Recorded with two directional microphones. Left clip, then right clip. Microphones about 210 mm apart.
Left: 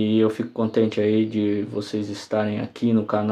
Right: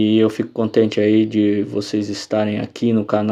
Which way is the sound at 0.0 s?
30° right (ahead or behind).